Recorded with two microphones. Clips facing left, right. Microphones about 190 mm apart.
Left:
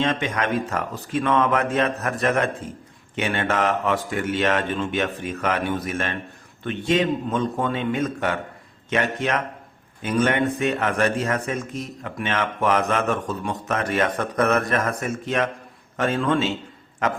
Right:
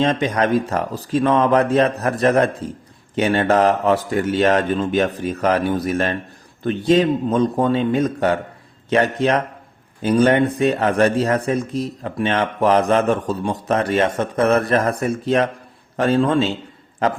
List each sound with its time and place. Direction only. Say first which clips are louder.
0.0 s a man's voice: right 5 dB; 35° right (ahead or behind)